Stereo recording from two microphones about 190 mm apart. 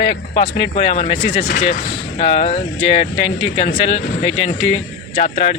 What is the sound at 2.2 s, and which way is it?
Speech, 30° left (ahead or behind).